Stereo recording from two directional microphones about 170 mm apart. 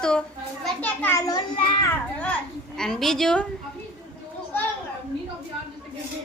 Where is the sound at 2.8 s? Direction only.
Centre (ahead or behind).